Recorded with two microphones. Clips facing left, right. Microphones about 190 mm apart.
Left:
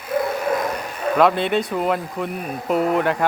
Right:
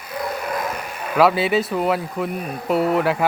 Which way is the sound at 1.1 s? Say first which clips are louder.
Right 1 dB; 5° right (ahead or behind).